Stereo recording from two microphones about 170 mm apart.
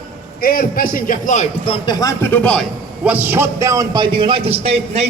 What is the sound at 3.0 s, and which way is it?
A man's voice, 10° right (ahead or behind).